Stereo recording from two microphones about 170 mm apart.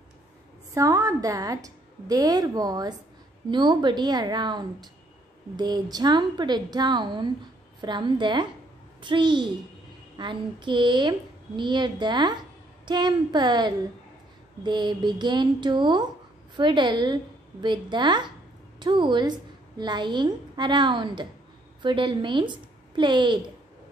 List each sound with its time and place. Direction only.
0.7 s a woman's voice: 20° right (ahead or behind)